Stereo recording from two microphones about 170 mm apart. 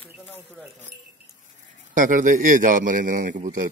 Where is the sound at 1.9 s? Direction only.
50° right (ahead or behind).